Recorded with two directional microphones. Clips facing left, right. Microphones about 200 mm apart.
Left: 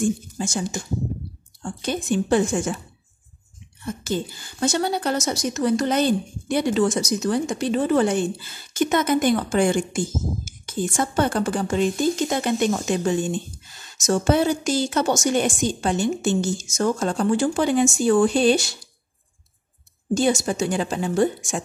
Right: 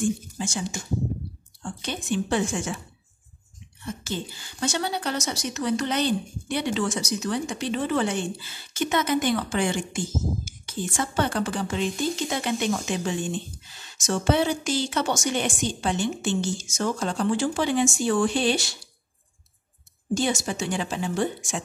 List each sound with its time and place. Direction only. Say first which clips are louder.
0.4 s a woman's voice: left 4 dB; 45° left (ahead or behind)
3.8 s a woman's voice: left 6 dB; 45° left (ahead or behind)
20.2 s a woman's voice: left 6 dB; 45° left (ahead or behind)